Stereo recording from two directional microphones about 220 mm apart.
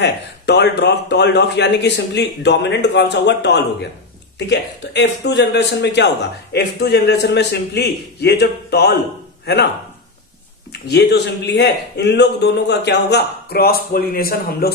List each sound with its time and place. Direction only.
0.0 s speech: 50° left (ahead or behind)
10.7 s speech: 50° left (ahead or behind)